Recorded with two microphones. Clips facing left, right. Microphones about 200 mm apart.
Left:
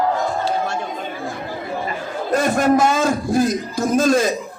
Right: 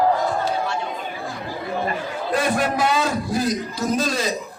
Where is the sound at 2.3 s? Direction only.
45° left (ahead or behind).